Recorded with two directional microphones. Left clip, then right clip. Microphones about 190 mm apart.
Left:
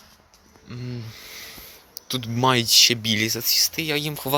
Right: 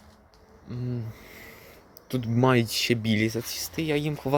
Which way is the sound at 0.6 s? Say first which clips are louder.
Even; centre (ahead or behind).